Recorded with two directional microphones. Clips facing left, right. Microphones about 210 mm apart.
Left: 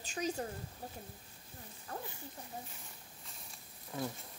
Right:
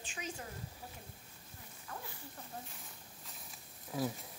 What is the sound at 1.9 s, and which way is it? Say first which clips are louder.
Speech: left 4 dB; 35° left (ahead or behind).